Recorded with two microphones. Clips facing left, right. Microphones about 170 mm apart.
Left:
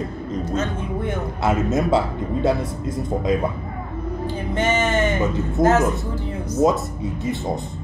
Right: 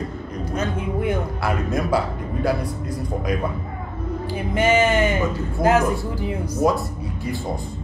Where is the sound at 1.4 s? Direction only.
25° left (ahead or behind).